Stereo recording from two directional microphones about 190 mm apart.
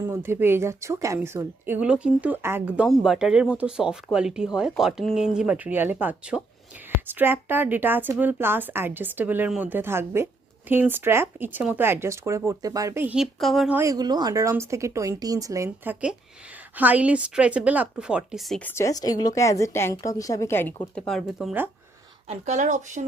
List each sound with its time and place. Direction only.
0.1 s a woman's voice: 10° right (ahead or behind)
13.7 s a woman's voice: 20° right (ahead or behind); by 18.7 s centre (ahead or behind)
18.7 s a woman's voice: 15° left (ahead or behind)
21.1 s speech: centre (ahead or behind)
22.3 s speech: 35° right (ahead or behind)